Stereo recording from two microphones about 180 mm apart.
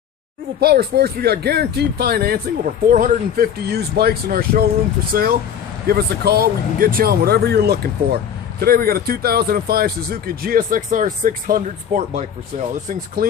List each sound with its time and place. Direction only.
0.6 s speech: 60° right (ahead or behind); by 12.2 s 45° right (ahead or behind)
13.2 s speech: 55° right (ahead or behind)